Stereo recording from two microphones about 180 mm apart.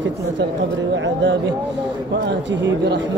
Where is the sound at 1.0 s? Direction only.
90° right.